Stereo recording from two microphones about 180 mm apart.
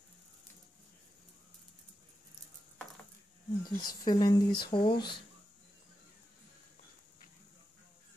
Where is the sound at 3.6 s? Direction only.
25° left (ahead or behind).